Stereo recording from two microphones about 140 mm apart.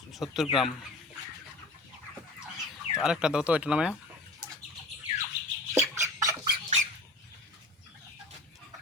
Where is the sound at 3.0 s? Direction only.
5° right (ahead or behind).